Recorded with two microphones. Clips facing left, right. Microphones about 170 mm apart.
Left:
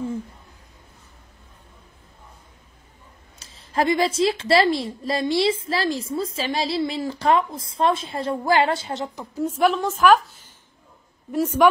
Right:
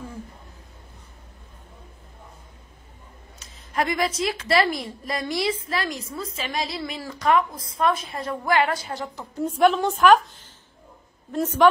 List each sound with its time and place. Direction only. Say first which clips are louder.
3.3 s a woman's voice: left 3 dB; 30° left (ahead or behind)
9.3 s a woman's voice: right 1 dB; 5° left (ahead or behind)